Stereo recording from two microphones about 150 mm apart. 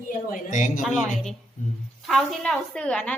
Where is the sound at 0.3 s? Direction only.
55° left (ahead or behind).